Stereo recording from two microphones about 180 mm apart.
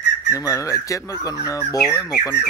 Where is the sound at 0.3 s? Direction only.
20° left (ahead or behind).